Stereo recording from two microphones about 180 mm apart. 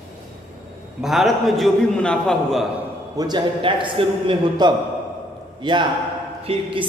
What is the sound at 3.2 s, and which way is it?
A man's voice, 25° right (ahead or behind).